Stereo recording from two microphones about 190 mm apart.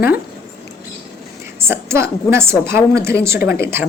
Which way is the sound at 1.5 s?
15° right (ahead or behind).